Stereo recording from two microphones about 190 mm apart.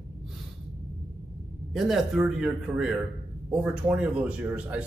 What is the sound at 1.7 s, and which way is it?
A man's voice, centre (ahead or behind).